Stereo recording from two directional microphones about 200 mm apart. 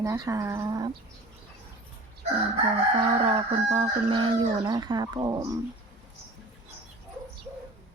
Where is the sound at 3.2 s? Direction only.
30° right (ahead or behind).